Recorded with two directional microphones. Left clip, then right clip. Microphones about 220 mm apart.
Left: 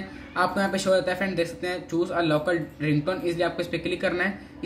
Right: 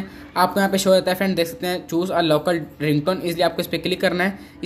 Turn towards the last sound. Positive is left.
turn(degrees=-40)  # may be behind; listen again after turning